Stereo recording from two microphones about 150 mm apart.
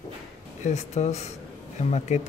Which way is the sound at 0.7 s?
50° left (ahead or behind).